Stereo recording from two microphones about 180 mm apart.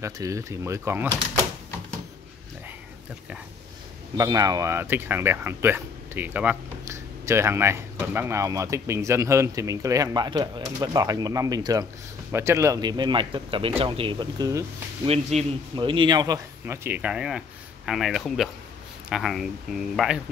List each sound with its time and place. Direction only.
0.0 s speech: 15° right (ahead or behind)
4.2 s speech: 20° right (ahead or behind)
15.0 s speech: 35° right (ahead or behind)
15.7 s speech: 25° right (ahead or behind); by 19.8 s 5° right (ahead or behind)